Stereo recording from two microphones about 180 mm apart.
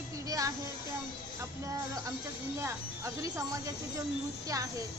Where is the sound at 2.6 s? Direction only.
15° right (ahead or behind).